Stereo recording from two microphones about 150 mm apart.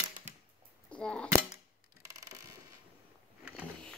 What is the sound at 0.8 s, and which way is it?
Scissors, 5° left (ahead or behind).